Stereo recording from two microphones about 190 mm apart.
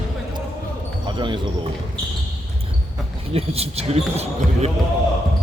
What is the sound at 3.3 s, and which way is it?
Speech, 30° right (ahead or behind).